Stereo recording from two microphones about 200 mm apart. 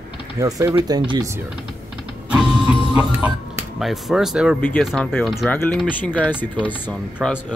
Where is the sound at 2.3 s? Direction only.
5° right (ahead or behind).